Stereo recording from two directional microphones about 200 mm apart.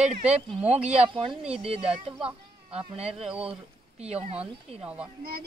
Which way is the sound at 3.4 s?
30° right (ahead or behind).